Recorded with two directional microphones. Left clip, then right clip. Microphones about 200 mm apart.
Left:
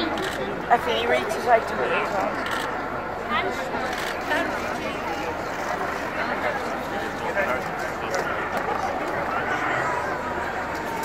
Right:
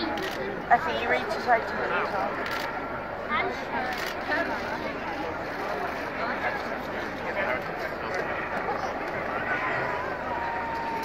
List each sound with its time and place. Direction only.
0.7 s speech: 50° left (ahead or behind)